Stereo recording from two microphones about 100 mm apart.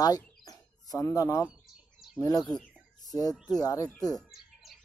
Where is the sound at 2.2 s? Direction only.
40° left (ahead or behind).